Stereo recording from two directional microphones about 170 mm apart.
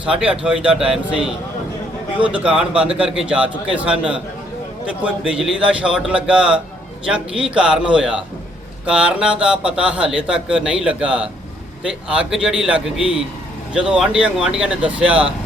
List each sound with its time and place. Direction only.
0.0 s a man's voice: 5° right (ahead or behind)